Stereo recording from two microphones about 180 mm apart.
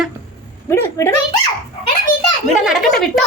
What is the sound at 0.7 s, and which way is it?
Speech, 15° left (ahead or behind).